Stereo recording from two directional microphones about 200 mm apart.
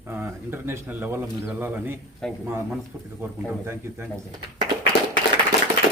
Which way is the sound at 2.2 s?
Centre (ahead or behind).